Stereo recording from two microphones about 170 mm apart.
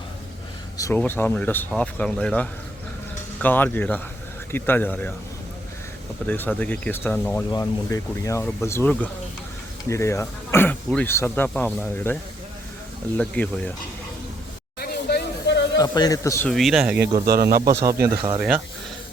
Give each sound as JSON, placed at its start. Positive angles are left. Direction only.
{"t": 0.8, "sound": "speech", "side_deg": 15}
{"t": 6.2, "sound": "speech", "side_deg": 10}
{"t": 14.8, "sound": "a sound", "side_deg": 70}
{"t": 15.8, "sound": "a man's voice", "side_deg": 20}
{"t": 16.5, "sound": "speech", "side_deg": 0}
{"t": 17.7, "sound": "speech", "side_deg": -15}
{"t": 18.3, "sound": "speech", "side_deg": -5}